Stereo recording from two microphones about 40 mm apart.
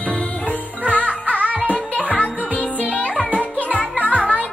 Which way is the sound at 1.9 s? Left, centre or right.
Right.